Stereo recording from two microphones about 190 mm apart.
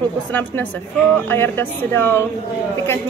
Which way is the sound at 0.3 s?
10° left (ahead or behind).